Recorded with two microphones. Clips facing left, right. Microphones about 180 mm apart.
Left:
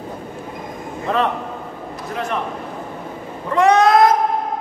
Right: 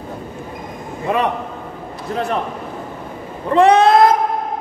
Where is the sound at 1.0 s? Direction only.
10° right (ahead or behind).